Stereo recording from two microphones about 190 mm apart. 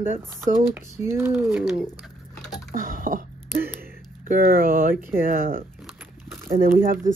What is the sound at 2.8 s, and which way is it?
Throat clearing, 45° right (ahead or behind).